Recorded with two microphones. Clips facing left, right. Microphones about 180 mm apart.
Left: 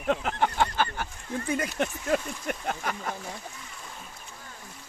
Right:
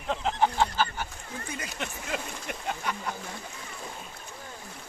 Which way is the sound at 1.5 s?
50° left (ahead or behind).